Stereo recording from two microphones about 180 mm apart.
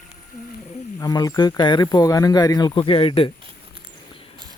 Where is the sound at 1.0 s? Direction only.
20° left (ahead or behind).